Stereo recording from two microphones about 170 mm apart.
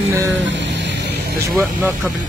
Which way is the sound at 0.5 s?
90° right.